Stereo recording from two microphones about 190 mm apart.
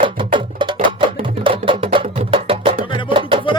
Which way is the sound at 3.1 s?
25° right (ahead or behind).